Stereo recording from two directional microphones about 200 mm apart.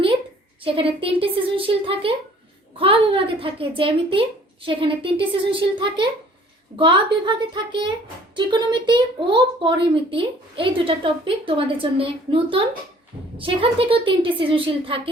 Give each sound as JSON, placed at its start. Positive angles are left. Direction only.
{"t": 0.6, "sound": "a woman's voice", "side_deg": -25}